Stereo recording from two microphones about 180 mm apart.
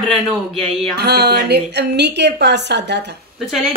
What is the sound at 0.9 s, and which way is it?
Speech, 65° right (ahead or behind).